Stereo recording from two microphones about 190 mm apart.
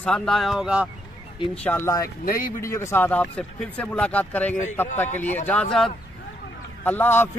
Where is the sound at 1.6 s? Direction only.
10° left (ahead or behind).